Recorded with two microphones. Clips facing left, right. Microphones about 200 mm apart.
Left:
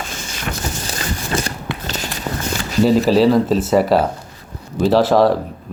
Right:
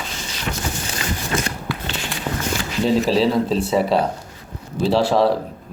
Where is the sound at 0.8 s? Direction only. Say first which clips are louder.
Left 1 dB; 35° left (ahead or behind).